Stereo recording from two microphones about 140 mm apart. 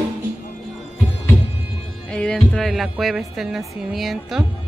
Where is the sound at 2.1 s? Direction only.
5° left (ahead or behind).